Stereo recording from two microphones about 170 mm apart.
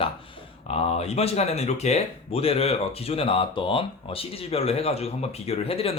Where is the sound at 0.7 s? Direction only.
35° left (ahead or behind).